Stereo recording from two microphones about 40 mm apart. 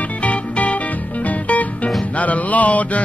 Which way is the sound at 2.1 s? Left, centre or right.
Left.